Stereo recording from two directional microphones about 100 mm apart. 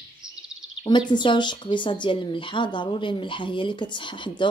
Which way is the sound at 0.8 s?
50° left (ahead or behind).